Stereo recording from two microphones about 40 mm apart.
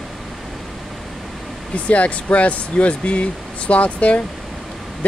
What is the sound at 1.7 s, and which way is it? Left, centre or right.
Speech, left.